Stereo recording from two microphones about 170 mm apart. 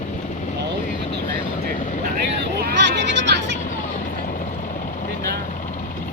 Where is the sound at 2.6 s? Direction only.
90° right.